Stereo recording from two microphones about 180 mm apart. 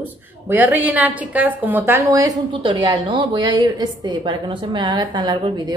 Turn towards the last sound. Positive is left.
turn(degrees=-25)  # may be behind; listen again after turning